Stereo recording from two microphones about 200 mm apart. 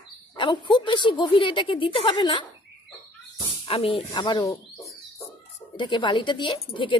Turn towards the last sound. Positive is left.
turn(degrees=25)  # may be behind; listen again after turning